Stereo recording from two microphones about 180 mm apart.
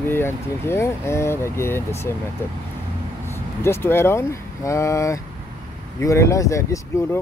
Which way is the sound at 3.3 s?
15° left (ahead or behind).